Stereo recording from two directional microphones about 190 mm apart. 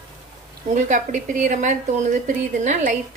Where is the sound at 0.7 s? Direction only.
40° right (ahead or behind).